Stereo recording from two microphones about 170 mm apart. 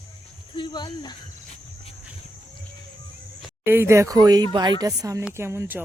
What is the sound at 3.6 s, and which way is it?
Speech, 15° right (ahead or behind).